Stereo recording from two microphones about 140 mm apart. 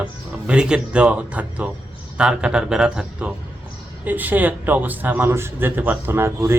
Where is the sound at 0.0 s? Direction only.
10° right (ahead or behind).